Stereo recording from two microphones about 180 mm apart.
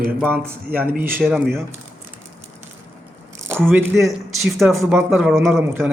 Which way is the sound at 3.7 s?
10° right (ahead or behind).